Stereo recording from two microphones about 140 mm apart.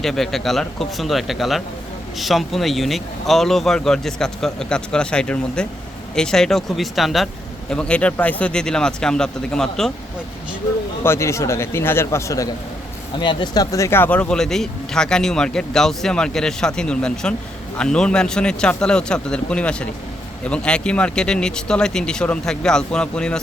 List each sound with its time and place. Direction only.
0.0 s speech: centre (ahead or behind)
11.0 s a man's voice: 20° left (ahead or behind)